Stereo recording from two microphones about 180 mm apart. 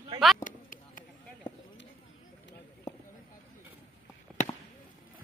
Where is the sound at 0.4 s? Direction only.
50° left (ahead or behind).